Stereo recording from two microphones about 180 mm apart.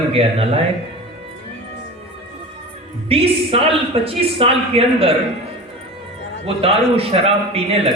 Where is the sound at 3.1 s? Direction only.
30° right (ahead or behind).